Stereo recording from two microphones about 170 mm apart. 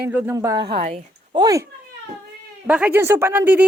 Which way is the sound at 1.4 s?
20° right (ahead or behind).